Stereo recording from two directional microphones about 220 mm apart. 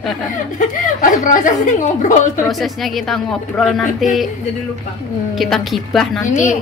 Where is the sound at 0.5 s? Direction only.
35° left (ahead or behind).